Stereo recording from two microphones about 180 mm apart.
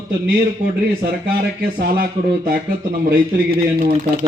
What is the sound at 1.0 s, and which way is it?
A man's voice, 55° right (ahead or behind).